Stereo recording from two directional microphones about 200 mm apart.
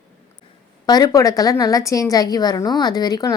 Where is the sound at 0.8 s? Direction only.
20° left (ahead or behind).